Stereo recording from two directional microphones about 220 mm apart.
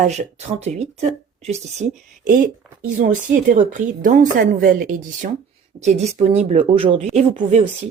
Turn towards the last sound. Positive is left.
turn(degrees=-35)  # may be behind; listen again after turning